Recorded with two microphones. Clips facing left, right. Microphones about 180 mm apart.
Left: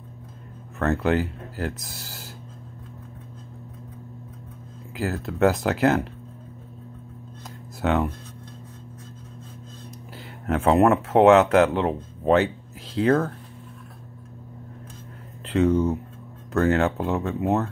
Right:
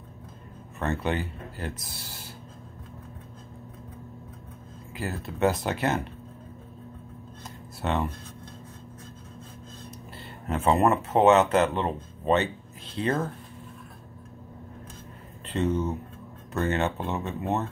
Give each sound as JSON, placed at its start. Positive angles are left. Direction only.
{"t": 0.7, "sound": "speech", "side_deg": 75}
{"t": 4.9, "sound": "speech", "side_deg": 85}
{"t": 7.8, "sound": "speech", "side_deg": 80}
{"t": 10.1, "sound": "speech", "side_deg": 85}
{"t": 15.4, "sound": "a sound", "side_deg": 90}
{"t": 16.5, "sound": "speech", "side_deg": 90}